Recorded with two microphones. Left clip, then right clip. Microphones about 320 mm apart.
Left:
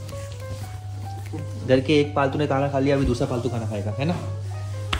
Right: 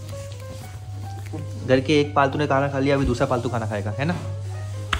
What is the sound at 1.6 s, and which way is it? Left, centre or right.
A man's voice, centre.